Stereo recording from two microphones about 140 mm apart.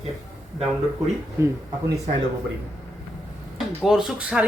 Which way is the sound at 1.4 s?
20° right (ahead or behind).